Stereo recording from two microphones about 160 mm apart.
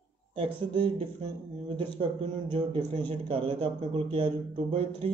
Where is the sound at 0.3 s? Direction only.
35° right (ahead or behind).